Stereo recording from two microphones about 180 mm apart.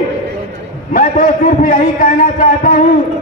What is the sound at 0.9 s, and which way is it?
A man's voice, 50° left (ahead or behind).